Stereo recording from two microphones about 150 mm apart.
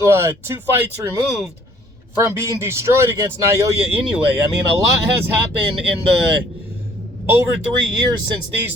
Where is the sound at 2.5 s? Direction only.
20° right (ahead or behind).